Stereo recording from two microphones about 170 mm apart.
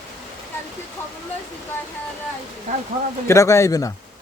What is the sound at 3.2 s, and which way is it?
Speech, 20° left (ahead or behind).